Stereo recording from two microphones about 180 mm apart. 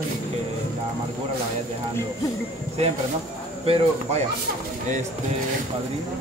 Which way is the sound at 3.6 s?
35° right (ahead or behind).